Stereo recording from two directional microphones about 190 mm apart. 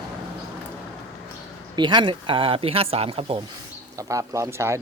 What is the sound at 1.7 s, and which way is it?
Speech, 25° right (ahead or behind).